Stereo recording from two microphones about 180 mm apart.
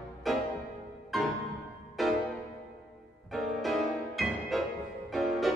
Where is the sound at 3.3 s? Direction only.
Centre (ahead or behind).